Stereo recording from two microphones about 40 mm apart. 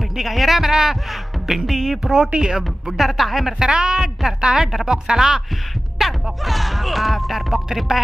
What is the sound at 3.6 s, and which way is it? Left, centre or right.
Speech, right.